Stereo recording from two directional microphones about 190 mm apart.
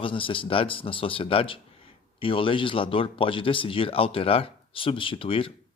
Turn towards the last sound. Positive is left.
turn(degrees=30)  # may be behind; listen again after turning